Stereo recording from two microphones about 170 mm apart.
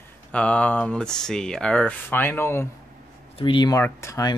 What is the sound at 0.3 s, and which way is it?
Speech, 5° left (ahead or behind).